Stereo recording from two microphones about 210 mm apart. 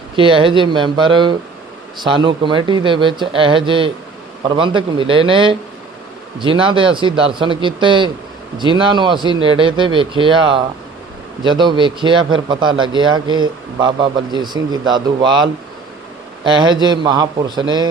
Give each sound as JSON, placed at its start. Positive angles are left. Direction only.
{"t": 0.2, "sound": "a man's voice", "side_deg": -25}